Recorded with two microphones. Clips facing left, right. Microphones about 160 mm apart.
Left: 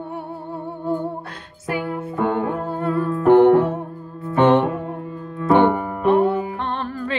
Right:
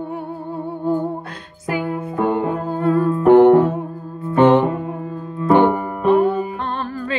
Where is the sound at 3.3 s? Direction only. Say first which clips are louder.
Right 2 dB; 30° right (ahead or behind).